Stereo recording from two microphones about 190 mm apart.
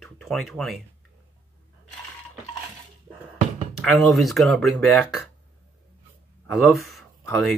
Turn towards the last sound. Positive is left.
turn(degrees=0)  # may be behind; listen again after turning